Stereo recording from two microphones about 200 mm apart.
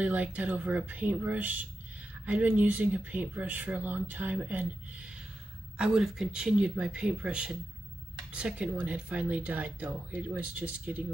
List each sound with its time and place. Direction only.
0.0 s speech: 5° right (ahead or behind)